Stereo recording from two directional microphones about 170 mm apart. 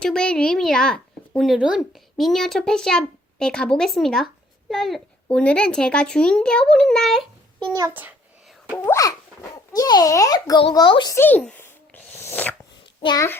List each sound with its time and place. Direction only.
0.0 s speech: 5° left (ahead or behind)
7.7 s a child's voice: 15° right (ahead or behind)
8.8 s a child's voice: 20° left (ahead or behind)
11.1 s a child's voice: 10° left (ahead or behind)
12.1 s dog: 10° left (ahead or behind)
13.0 s a child's voice: 25° left (ahead or behind)